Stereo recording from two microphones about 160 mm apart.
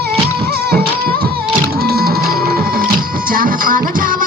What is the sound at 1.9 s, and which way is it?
Music, 70° right (ahead or behind).